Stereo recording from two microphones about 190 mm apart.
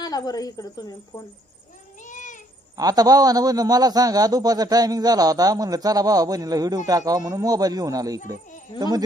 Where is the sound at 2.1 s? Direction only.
40° left (ahead or behind).